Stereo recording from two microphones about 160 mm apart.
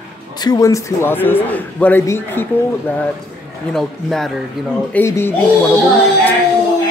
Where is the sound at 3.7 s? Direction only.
Centre (ahead or behind).